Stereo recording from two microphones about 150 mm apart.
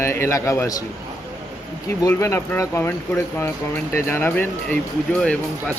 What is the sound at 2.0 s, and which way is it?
Speech, 20° left (ahead or behind).